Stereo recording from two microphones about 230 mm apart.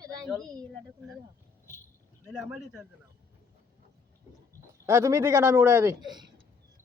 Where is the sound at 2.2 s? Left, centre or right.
Centre.